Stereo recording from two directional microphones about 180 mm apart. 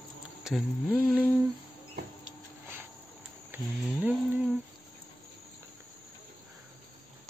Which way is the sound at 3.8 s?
5° right (ahead or behind).